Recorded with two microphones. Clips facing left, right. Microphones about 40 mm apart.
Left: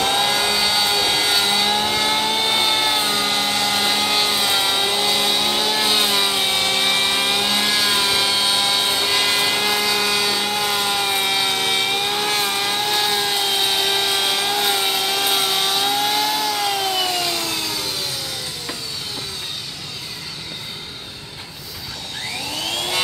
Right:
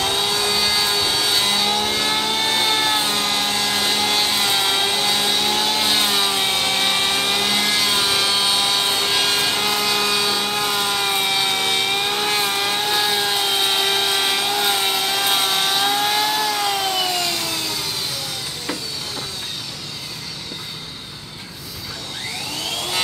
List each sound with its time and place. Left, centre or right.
0.1 s vehicle: centre
0.6 s a sound: centre
1.3 s vehicle: centre